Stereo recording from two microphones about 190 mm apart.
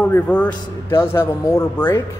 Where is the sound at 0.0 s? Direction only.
10° left (ahead or behind).